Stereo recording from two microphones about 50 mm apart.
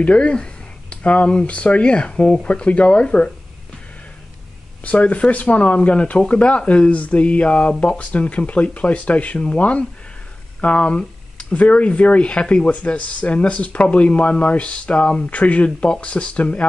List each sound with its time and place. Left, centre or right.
0.0 s speech: left
4.8 s speech: left